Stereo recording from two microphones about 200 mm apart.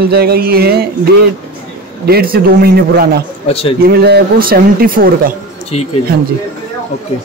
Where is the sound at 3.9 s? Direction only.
55° right (ahead or behind).